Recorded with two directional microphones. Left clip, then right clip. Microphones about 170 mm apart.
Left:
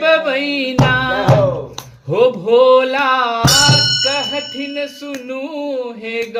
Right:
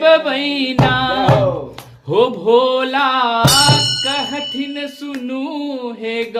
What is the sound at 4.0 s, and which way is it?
Music, 30° right (ahead or behind).